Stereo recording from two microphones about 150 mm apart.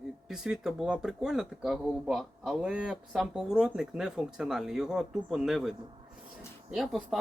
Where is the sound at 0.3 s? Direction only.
5° right (ahead or behind).